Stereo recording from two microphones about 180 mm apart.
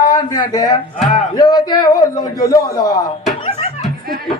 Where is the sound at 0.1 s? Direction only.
20° left (ahead or behind).